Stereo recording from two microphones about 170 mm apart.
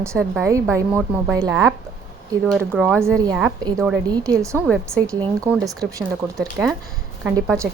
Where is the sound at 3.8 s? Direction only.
5° right (ahead or behind).